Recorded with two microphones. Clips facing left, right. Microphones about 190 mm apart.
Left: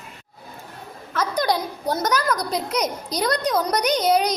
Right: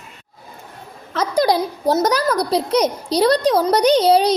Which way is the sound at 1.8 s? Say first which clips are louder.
Right 6 dB; 35° right (ahead or behind).